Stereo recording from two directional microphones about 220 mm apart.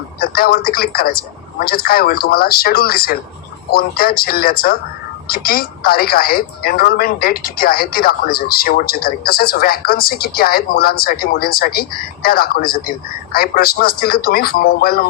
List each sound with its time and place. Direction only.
0.2 s a woman's voice: 45° left (ahead or behind)